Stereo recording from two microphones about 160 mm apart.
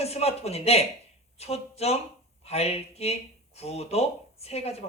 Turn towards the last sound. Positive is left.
turn(degrees=40)  # may be behind; listen again after turning